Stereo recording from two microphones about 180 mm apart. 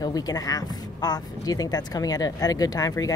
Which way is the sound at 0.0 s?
20° left (ahead or behind).